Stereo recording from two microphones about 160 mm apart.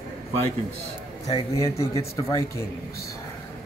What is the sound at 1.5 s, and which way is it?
Speech, 20° left (ahead or behind).